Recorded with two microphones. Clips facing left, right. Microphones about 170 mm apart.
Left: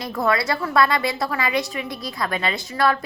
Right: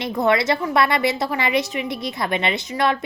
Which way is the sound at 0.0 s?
20° right (ahead or behind).